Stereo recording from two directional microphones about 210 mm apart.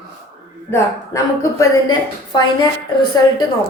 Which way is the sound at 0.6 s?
10° left (ahead or behind).